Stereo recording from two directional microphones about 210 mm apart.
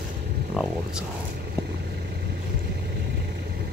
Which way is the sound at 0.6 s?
5° right (ahead or behind).